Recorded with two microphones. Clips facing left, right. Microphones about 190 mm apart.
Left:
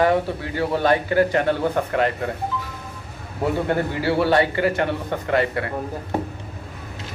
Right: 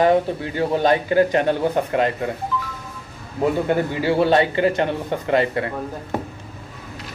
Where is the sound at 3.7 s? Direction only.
15° right (ahead or behind).